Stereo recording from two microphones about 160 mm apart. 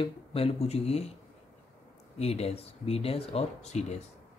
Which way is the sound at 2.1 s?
40° left (ahead or behind).